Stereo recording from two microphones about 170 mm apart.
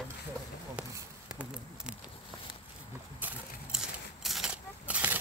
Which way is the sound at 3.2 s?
5° right (ahead or behind).